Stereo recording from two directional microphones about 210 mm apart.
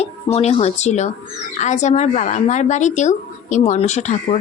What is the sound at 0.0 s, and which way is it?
A woman's voice, 30° left (ahead or behind).